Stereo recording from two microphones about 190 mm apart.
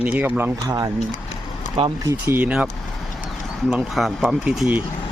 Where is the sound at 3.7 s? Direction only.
Centre (ahead or behind).